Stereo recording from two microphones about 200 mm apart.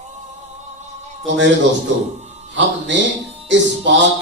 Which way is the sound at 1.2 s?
65° right (ahead or behind).